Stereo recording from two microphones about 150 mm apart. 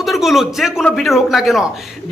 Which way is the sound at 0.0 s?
Centre (ahead or behind).